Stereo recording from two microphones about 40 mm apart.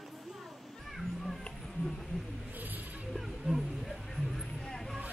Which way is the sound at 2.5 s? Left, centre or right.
Right.